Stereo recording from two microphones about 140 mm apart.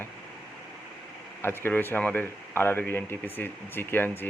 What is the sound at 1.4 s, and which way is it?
Speech, 15° left (ahead or behind).